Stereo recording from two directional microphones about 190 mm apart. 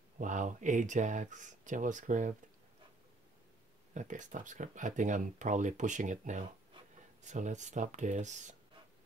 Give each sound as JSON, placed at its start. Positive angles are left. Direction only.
{"t": 0.2, "sound": "speech", "side_deg": -40}
{"t": 3.9, "sound": "speech", "side_deg": -40}